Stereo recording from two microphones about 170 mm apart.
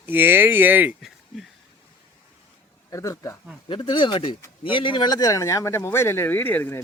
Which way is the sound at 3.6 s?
30° left (ahead or behind).